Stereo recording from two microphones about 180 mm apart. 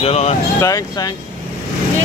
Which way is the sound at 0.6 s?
20° left (ahead or behind).